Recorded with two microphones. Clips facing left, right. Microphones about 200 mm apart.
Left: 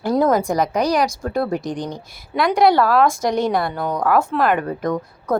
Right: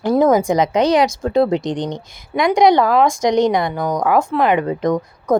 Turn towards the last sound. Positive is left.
turn(degrees=-20)  # may be behind; listen again after turning